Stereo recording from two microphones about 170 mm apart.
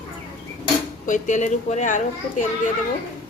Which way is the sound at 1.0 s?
45° left (ahead or behind).